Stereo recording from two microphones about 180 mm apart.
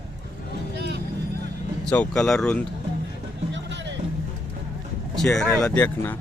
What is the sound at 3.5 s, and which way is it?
Music, 80° right.